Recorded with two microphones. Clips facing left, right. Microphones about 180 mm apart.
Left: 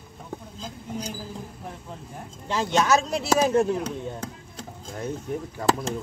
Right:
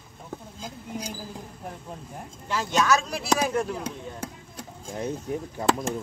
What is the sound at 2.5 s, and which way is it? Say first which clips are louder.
Speech: left 2 dB; 20° left (ahead or behind).